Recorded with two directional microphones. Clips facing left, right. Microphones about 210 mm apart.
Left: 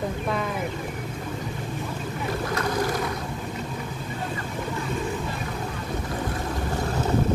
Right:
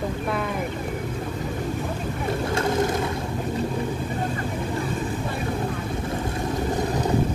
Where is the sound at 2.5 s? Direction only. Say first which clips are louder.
Right 3 dB; 25° right (ahead or behind).